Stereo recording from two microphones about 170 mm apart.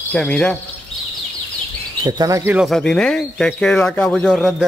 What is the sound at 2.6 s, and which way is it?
Speech, 5° left (ahead or behind).